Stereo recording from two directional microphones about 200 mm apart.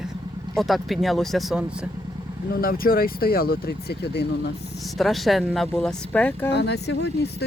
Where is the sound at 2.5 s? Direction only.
45° left (ahead or behind).